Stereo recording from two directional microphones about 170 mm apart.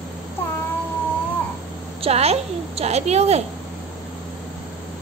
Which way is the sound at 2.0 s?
35° right (ahead or behind).